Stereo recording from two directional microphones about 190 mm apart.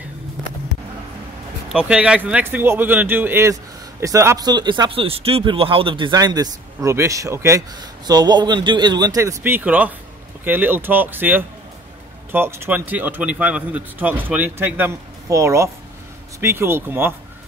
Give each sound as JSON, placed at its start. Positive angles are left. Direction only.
{"t": 1.7, "sound": "speech", "side_deg": -5}